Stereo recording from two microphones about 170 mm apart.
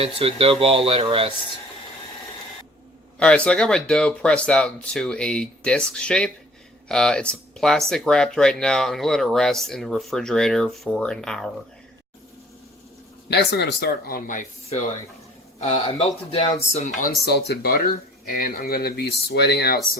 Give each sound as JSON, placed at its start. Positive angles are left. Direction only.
{"t": 0.0, "sound": "speech", "side_deg": -35}
{"t": 3.2, "sound": "speech", "side_deg": 5}
{"t": 13.2, "sound": "speech", "side_deg": 80}
{"t": 15.6, "sound": "speech", "side_deg": 35}
{"t": 17.0, "sound": "speech", "side_deg": 70}